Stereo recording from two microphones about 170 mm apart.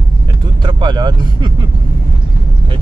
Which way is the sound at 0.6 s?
25° right (ahead or behind).